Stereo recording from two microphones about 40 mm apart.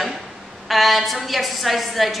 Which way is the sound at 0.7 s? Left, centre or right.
Centre.